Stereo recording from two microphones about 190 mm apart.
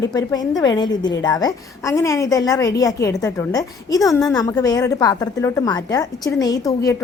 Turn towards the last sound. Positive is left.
turn(degrees=20)  # may be behind; listen again after turning